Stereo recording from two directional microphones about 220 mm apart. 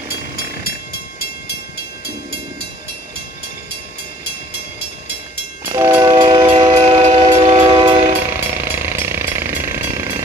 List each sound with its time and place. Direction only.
5.6 s train: 10° right (ahead or behind)